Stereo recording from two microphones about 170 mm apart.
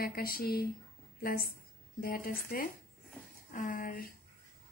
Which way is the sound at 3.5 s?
50° left (ahead or behind).